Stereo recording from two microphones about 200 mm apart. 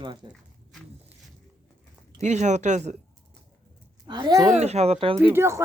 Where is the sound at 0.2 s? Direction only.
20° right (ahead or behind).